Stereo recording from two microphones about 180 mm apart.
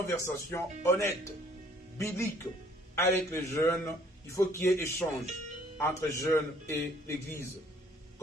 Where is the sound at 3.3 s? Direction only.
15° left (ahead or behind).